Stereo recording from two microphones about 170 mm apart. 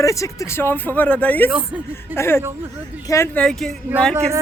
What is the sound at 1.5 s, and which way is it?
Speech, 10° right (ahead or behind).